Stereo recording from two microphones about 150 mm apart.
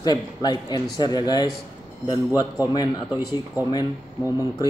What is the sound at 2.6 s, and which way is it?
Speech, 25° left (ahead or behind).